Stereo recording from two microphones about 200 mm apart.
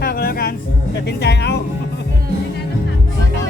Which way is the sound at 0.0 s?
50° left (ahead or behind).